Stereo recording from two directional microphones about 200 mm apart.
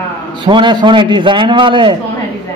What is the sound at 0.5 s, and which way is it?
A man's voice, 25° right (ahead or behind).